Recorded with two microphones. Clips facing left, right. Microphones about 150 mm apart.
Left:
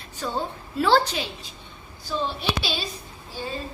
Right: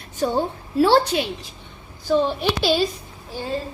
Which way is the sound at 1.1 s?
50° right (ahead or behind).